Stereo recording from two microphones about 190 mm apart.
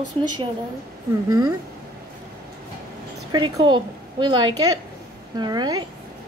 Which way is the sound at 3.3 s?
25° right (ahead or behind).